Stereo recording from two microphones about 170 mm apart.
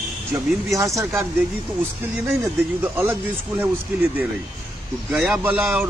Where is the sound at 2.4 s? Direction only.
10° right (ahead or behind).